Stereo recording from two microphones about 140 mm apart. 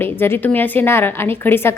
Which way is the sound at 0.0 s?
15° left (ahead or behind).